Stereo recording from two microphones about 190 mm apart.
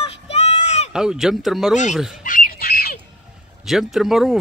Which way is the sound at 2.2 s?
45° left (ahead or behind).